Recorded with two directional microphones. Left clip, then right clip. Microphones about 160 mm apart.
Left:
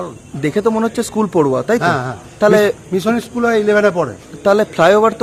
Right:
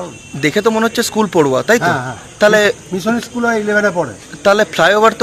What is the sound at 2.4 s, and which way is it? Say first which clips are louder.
Speech: right 1 dB; 10° left (ahead or behind).